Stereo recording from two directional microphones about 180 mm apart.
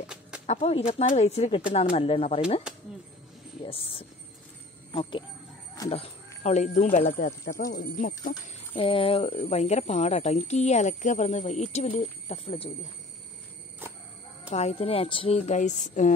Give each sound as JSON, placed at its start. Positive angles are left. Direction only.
{"t": 0.0, "sound": "a sound", "side_deg": -5}
{"t": 0.5, "sound": "a woman's voice", "side_deg": 35}
{"t": 2.7, "sound": "a sound", "side_deg": -5}
{"t": 3.6, "sound": "a woman's voice", "side_deg": 30}
{"t": 5.9, "sound": "a woman's voice", "side_deg": 35}
{"t": 7.2, "sound": "speech", "side_deg": 55}
{"t": 8.7, "sound": "a woman's voice", "side_deg": 30}
{"t": 14.5, "sound": "a woman's voice", "side_deg": 35}